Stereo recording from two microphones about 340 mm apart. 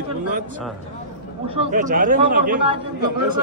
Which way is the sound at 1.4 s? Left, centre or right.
Centre.